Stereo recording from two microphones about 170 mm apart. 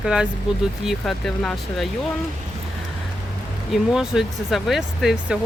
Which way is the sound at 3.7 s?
Centre (ahead or behind).